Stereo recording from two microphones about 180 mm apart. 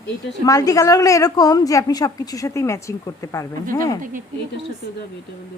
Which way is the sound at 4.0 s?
45° right (ahead or behind).